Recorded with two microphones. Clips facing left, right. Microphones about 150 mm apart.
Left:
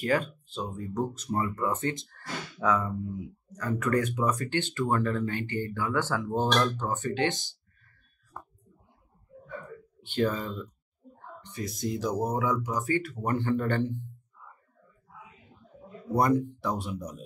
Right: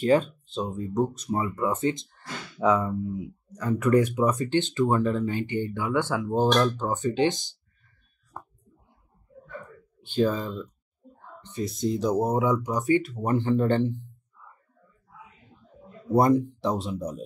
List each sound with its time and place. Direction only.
0.0 s speech: 25° right (ahead or behind)
10.1 s speech: 10° right (ahead or behind)
11.4 s speech: 25° right (ahead or behind)
16.2 s speech: 25° right (ahead or behind)